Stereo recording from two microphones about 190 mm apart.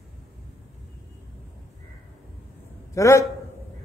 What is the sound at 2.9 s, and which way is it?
Speech, 15° left (ahead or behind).